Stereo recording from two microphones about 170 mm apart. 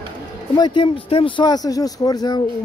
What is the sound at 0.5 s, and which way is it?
Speech, 25° left (ahead or behind).